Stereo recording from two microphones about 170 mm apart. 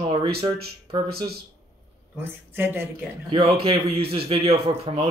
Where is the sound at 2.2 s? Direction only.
10° right (ahead or behind).